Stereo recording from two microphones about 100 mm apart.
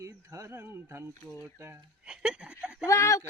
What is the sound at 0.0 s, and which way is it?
Speech, 30° right (ahead or behind).